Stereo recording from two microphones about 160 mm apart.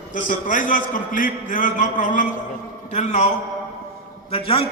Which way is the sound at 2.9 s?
45° left (ahead or behind).